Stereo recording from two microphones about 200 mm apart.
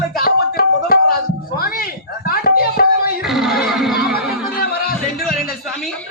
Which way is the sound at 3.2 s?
Centre (ahead or behind).